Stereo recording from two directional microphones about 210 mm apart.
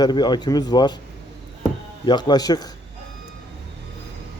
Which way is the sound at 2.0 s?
20° left (ahead or behind).